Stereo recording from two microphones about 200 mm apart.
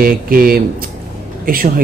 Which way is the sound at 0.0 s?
45° right (ahead or behind).